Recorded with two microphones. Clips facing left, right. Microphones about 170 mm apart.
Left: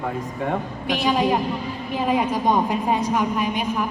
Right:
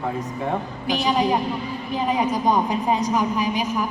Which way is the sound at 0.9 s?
Centre (ahead or behind).